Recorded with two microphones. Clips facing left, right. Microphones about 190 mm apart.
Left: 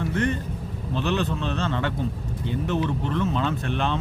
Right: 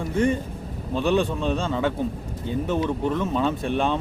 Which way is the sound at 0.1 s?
10° right (ahead or behind).